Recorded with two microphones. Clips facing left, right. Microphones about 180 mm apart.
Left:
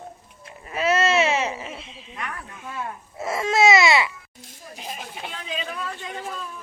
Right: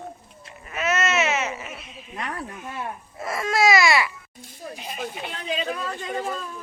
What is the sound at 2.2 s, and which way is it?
Speech, 30° right (ahead or behind).